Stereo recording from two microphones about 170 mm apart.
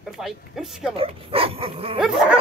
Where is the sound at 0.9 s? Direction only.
35° right (ahead or behind).